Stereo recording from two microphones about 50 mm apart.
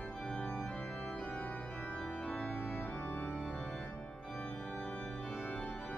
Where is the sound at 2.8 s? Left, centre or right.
Left.